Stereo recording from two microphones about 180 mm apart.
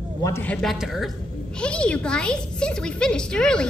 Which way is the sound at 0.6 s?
Centre (ahead or behind).